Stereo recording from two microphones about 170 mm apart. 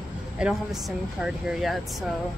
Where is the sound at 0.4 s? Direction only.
5° right (ahead or behind).